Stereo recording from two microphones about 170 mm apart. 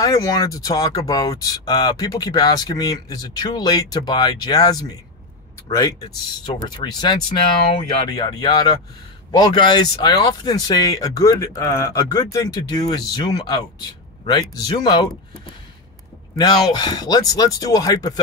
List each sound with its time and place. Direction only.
0.0 s speech: 20° left (ahead or behind)
6.4 s speech: 25° left (ahead or behind)
16.3 s speech: 25° left (ahead or behind)